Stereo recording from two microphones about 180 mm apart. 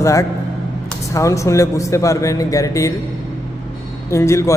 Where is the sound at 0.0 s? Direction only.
15° left (ahead or behind).